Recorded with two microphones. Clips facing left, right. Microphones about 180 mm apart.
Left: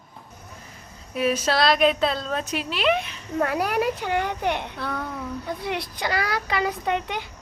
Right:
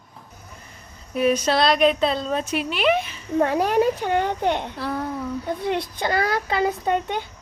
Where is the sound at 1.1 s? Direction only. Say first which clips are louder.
Right 3 dB; centre (ahead or behind).